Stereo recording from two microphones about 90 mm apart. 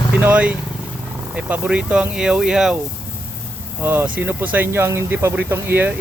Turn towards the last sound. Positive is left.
turn(degrees=-25)  # may be behind; listen again after turning